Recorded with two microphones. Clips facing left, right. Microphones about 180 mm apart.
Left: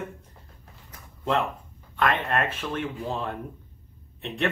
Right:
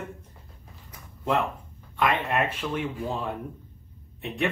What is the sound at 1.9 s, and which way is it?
Speech, 15° right (ahead or behind).